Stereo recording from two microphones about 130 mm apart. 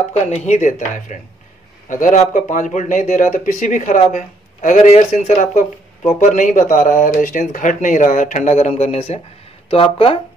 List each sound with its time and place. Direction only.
0.1 s speech: 60° left (ahead or behind)
6.0 s speech: 75° left (ahead or behind); by 10.1 s 45° left (ahead or behind)